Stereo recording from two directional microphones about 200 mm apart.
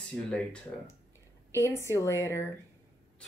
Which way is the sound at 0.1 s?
5° left (ahead or behind).